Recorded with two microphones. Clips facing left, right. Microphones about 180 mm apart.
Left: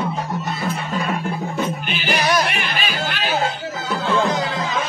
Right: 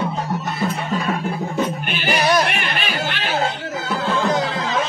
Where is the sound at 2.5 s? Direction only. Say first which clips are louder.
Even; centre (ahead or behind).